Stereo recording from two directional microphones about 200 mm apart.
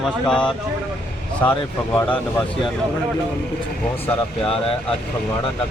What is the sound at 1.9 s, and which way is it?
Speech, 5° left (ahead or behind).